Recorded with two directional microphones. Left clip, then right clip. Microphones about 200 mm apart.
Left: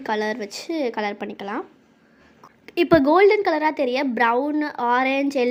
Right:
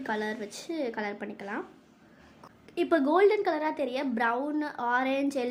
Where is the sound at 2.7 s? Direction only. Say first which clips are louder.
Left 9 dB; 30° left (ahead or behind).